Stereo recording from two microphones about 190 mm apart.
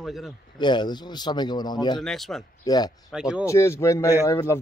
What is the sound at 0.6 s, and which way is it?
Speech, 25° left (ahead or behind).